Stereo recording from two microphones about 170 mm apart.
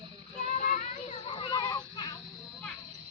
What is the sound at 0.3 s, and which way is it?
Children playing, 45° left (ahead or behind).